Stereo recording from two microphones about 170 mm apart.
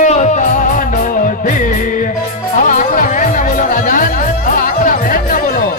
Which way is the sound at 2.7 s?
50° left (ahead or behind).